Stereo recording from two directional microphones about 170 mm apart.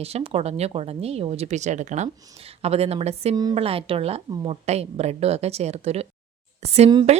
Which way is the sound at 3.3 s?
25° right (ahead or behind).